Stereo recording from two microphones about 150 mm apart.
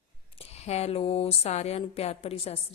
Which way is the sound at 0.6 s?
45° left (ahead or behind).